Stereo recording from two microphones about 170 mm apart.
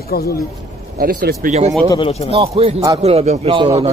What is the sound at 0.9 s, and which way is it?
Speech, 60° right (ahead or behind).